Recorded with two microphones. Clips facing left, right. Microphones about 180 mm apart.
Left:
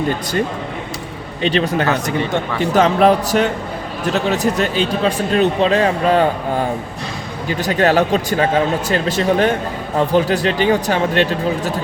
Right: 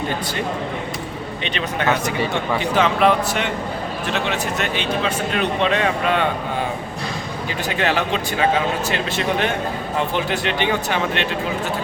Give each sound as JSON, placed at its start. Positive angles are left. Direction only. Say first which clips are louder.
{"t": 1.4, "sound": "a man's voice", "louder": "left 9 dB", "side_deg": 35}
{"t": 7.6, "sound": "a man's voice", "louder": "left 7 dB", "side_deg": 40}